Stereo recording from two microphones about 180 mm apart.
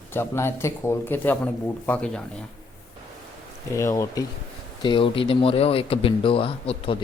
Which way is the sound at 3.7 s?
15° left (ahead or behind).